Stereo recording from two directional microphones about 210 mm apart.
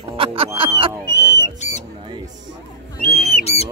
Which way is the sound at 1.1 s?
15° left (ahead or behind).